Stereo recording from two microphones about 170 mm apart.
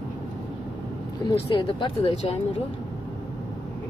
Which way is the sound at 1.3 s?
30° left (ahead or behind).